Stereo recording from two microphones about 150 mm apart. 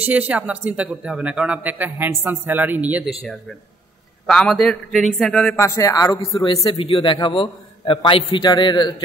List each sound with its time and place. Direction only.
0.0 s a man's voice: 10° right (ahead or behind); by 5.6 s 10° left (ahead or behind)
5.6 s speech: 20° left (ahead or behind)
6.6 s a man's voice: 35° left (ahead or behind)